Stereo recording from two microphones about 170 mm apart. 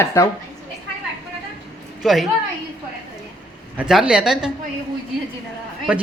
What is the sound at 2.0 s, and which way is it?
Speech, centre (ahead or behind).